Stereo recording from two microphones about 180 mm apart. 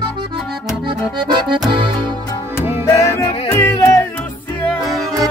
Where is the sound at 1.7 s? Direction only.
25° right (ahead or behind).